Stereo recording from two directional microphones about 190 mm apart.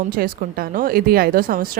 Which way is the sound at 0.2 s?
50° right (ahead or behind).